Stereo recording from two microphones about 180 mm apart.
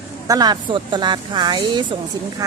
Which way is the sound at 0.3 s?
20° right (ahead or behind).